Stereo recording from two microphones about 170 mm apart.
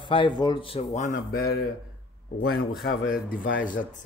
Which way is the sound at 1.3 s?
60° left (ahead or behind).